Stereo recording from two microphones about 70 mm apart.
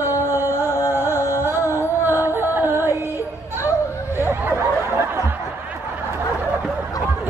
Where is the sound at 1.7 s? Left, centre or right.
Right.